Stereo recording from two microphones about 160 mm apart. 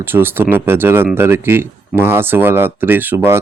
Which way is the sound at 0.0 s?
15° right (ahead or behind).